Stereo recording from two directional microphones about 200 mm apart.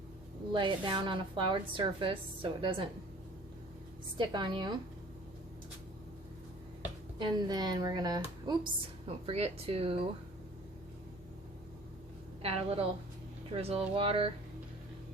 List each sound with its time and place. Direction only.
0.5 s a woman's voice: 25° right (ahead or behind)
4.2 s a woman's voice: 25° right (ahead or behind)
7.2 s a woman's voice: 20° right (ahead or behind)
12.4 s a woman's voice: 30° right (ahead or behind)